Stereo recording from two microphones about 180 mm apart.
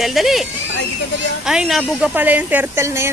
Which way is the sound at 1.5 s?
Centre (ahead or behind).